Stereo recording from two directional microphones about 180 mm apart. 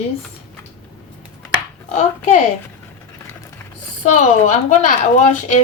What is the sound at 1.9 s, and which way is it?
Speech, 40° left (ahead or behind).